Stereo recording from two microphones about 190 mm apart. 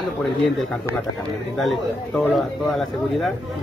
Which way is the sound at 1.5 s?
Centre (ahead or behind).